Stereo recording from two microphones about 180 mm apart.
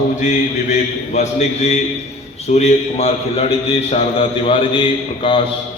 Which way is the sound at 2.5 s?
35° left (ahead or behind).